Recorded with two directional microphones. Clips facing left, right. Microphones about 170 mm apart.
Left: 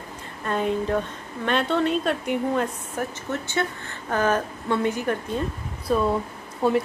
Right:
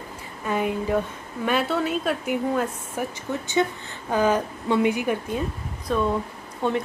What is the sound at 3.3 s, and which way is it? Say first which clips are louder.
Speech: right 5 dB; 15° right (ahead or behind).